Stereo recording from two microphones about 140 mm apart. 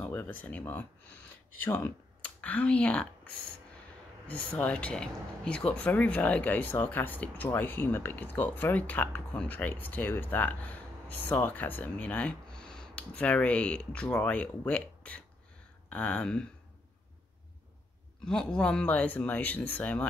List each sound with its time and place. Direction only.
0.0 s speech: 10° left (ahead or behind)
4.6 s speech: 10° left (ahead or behind)
18.2 s speech: 5° left (ahead or behind)